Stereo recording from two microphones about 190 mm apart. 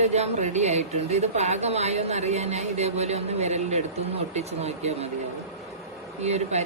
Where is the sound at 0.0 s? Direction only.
35° right (ahead or behind).